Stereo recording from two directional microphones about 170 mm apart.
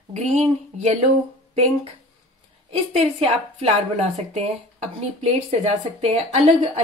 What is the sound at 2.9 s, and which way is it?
Speech, 40° right (ahead or behind).